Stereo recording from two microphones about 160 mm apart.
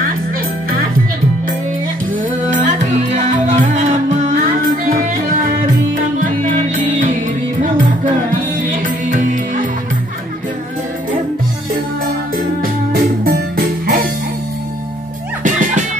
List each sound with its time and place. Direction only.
2.5 s music: 50° right (ahead or behind)
8.8 s music: 55° right (ahead or behind)
12.9 s music: 75° right (ahead or behind)
15.4 s music: 50° right (ahead or behind)